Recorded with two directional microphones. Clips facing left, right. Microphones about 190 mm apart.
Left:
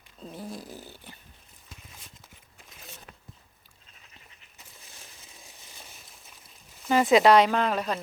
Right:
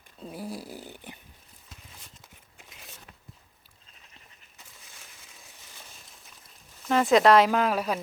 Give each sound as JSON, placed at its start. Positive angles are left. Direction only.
{"t": 0.2, "sound": "a sound", "side_deg": -5}
{"t": 0.5, "sound": "snoring", "side_deg": -10}
{"t": 6.8, "sound": "speech", "side_deg": 5}